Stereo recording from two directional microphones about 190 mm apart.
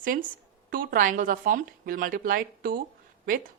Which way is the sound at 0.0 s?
45° right (ahead or behind).